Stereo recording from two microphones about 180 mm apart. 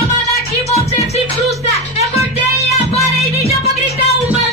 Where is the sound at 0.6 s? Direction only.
35° left (ahead or behind).